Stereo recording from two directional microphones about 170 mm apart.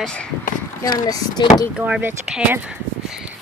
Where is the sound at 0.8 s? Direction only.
20° left (ahead or behind).